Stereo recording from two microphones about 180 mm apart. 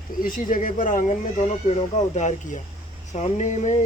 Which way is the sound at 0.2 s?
50° left (ahead or behind).